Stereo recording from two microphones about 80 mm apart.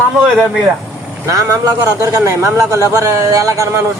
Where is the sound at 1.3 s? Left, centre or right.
Right.